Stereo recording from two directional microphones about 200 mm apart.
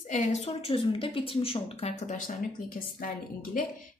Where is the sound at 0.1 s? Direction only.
35° left (ahead or behind).